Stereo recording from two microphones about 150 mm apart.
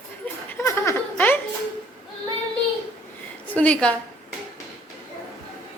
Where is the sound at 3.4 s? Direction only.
10° left (ahead or behind).